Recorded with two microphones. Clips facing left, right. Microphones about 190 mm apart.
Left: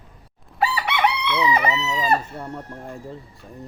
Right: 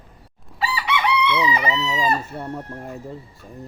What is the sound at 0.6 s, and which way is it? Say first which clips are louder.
Chicken: left 2 dB; 60° left (ahead or behind).